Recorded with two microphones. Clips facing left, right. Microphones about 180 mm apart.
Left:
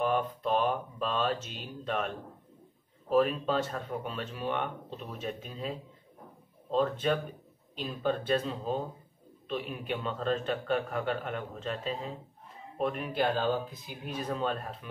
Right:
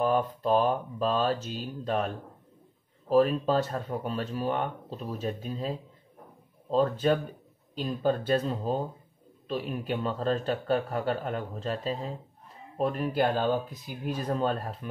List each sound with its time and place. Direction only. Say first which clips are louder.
0.0 s speech: right 3 dB; 35° right (ahead or behind)
3.1 s speech: right 3 dB; 35° right (ahead or behind)